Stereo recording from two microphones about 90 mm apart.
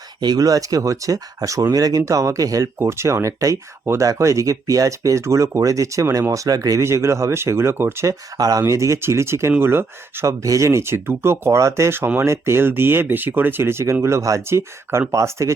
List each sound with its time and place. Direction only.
0.2 s speech: 45° right (ahead or behind); by 8.1 s 25° right (ahead or behind)
8.4 s speech: 40° right (ahead or behind)